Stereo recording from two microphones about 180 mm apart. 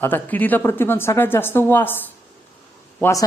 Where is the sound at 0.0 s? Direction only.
10° left (ahead or behind).